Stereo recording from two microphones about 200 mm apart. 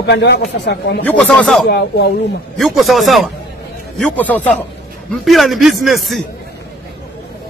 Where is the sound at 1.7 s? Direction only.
55° left (ahead or behind).